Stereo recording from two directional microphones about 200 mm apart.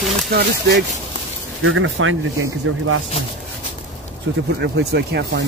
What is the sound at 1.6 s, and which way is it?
Speech, 80° right.